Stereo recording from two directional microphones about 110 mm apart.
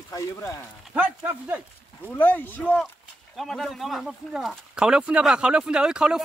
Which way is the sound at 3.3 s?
Centre (ahead or behind).